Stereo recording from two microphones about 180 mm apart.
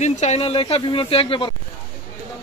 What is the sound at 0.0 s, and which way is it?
Speech, 40° left (ahead or behind).